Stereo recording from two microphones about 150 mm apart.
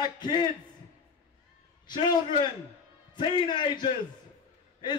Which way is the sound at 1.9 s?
30° left (ahead or behind).